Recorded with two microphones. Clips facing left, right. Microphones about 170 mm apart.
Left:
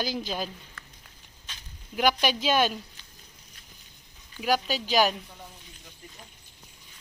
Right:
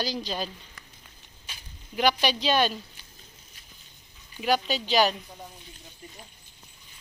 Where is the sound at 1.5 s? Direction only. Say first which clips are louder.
Even; 10° right (ahead or behind).